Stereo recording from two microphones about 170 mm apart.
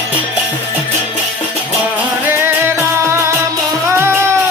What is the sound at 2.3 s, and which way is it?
Music, 15° right (ahead or behind).